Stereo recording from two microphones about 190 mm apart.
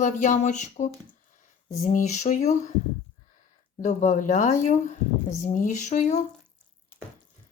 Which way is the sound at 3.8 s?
40° left (ahead or behind).